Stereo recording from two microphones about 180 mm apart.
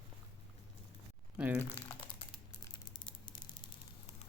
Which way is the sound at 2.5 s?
25° left (ahead or behind).